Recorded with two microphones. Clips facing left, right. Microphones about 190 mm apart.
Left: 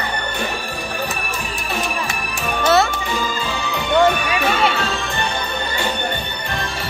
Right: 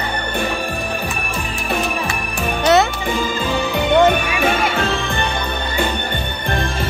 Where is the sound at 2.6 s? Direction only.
20° right (ahead or behind).